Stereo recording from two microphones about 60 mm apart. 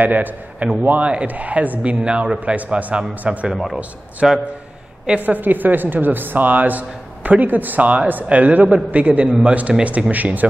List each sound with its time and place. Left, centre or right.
0.0 s a woman's voice: right
3.5 s a man's voice: centre
5.0 s a woman's voice: right